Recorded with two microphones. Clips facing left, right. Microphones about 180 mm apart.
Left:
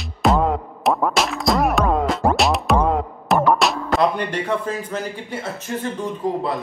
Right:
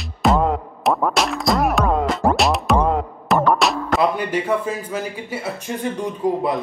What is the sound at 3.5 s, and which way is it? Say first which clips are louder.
Speech: even; centre (ahead or behind).